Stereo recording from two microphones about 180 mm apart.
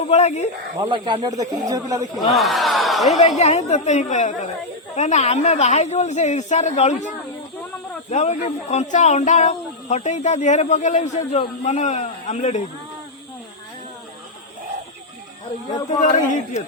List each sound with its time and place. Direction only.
0.0 s speech: 35° left (ahead or behind)
0.8 s speech: 30° right (ahead or behind)
2.1 s speech: centre (ahead or behind)
3.2 s speech: 40° left (ahead or behind)
16.0 s a man's voice: 45° left (ahead or behind)